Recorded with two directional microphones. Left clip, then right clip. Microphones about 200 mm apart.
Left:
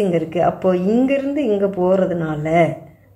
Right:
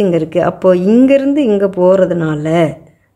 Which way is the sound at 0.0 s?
45° right (ahead or behind).